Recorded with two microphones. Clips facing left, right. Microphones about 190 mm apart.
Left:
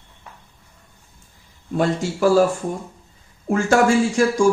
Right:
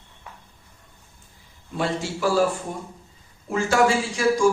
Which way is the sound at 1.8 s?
45° left (ahead or behind).